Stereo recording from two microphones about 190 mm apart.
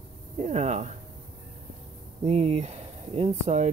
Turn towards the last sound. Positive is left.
turn(degrees=-35)  # may be behind; listen again after turning